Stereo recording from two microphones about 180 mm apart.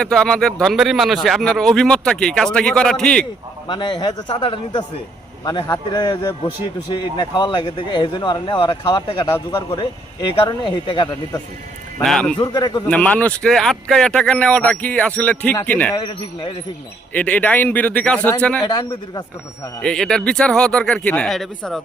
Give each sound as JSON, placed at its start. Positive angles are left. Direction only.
{"t": 0.0, "sound": "a man's voice", "side_deg": 5}
{"t": 3.7, "sound": "speech", "side_deg": 25}
{"t": 12.0, "sound": "a man's voice", "side_deg": 5}
{"t": 12.4, "sound": "speech", "side_deg": 25}
{"t": 12.9, "sound": "speech", "side_deg": 5}
{"t": 16.0, "sound": "speech", "side_deg": 25}
{"t": 17.2, "sound": "speech", "side_deg": 10}
{"t": 18.6, "sound": "speech", "side_deg": 25}
{"t": 19.8, "sound": "a man's voice", "side_deg": 5}